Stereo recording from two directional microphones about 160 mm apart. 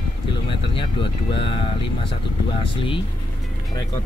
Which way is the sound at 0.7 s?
30° left (ahead or behind).